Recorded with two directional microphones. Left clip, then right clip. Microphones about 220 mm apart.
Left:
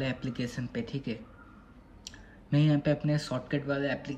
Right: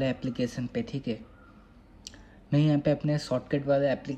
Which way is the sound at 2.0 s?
20° right (ahead or behind).